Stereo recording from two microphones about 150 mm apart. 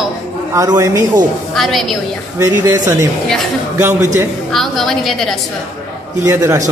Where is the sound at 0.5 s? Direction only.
20° right (ahead or behind).